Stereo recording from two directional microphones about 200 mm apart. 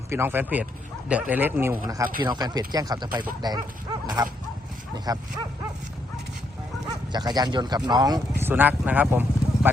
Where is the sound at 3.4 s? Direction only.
20° right (ahead or behind).